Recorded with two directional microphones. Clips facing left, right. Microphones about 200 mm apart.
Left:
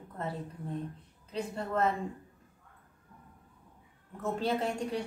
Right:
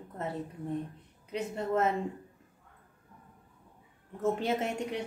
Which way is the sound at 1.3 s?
20° right (ahead or behind).